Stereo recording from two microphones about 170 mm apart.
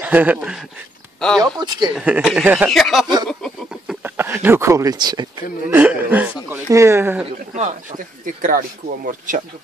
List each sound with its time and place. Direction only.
0.0 s a sound: 10° right (ahead or behind)
1.4 s speech: 25° right (ahead or behind)
2.0 s speech: 5° right (ahead or behind)
4.2 s speech: 15° right (ahead or behind)
5.8 s speech: 10° right (ahead or behind)
8.4 s speech: 55° right (ahead or behind)